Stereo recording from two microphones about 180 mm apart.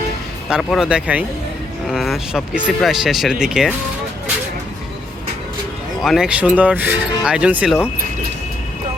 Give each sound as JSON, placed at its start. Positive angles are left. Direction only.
{"t": 0.5, "sound": "speech", "side_deg": -5}
{"t": 6.0, "sound": "speech", "side_deg": 0}